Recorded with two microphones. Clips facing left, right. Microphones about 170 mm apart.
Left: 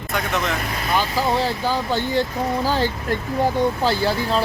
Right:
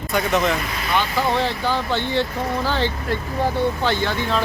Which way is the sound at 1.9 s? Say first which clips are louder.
Left 1 dB; 40° left (ahead or behind).